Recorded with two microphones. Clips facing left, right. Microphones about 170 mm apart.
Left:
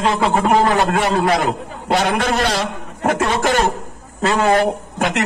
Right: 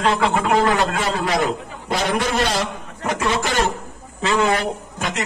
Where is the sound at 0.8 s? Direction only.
60° left (ahead or behind).